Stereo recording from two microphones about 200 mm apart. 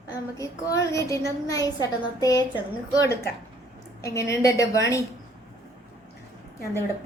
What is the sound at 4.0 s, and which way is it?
Speech, 15° left (ahead or behind).